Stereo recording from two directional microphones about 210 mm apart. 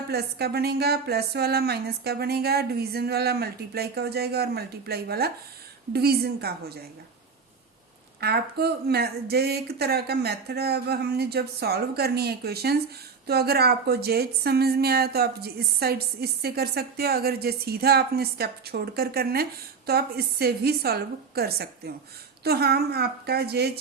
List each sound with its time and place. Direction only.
0.1 s a woman's voice: 50° right (ahead or behind)
8.2 s a woman's voice: 50° right (ahead or behind)